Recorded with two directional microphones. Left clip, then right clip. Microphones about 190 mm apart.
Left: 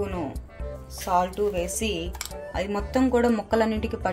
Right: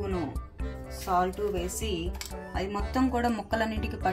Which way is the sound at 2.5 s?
35° left (ahead or behind).